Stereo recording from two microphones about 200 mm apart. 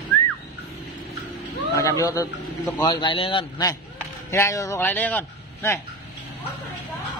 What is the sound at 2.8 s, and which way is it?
A man's voice, 20° left (ahead or behind).